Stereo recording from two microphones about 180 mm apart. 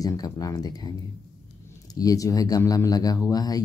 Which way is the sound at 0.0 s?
20° left (ahead or behind).